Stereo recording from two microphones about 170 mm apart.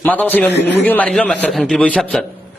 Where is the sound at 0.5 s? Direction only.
90° left.